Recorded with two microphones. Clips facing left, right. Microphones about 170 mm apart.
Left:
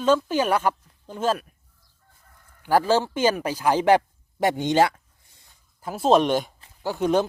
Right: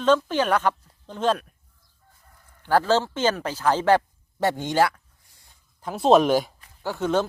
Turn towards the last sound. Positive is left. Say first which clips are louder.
# left 2 dB
turn(degrees=15)  # may be behind; listen again after turning